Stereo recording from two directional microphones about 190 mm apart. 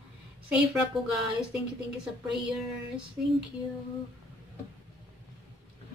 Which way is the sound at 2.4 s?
5° right (ahead or behind).